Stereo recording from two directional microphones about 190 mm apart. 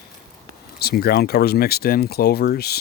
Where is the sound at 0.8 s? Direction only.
55° left (ahead or behind).